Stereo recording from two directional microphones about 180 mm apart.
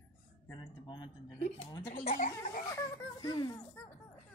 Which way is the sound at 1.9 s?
50° left (ahead or behind).